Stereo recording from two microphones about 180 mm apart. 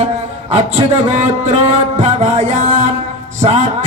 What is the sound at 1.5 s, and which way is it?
Music, 40° right (ahead or behind).